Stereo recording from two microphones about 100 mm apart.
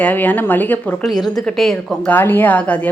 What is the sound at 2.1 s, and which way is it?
Speech, 20° left (ahead or behind).